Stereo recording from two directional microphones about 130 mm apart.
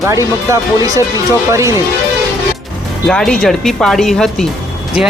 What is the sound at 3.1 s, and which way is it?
Speech, 5° left (ahead or behind).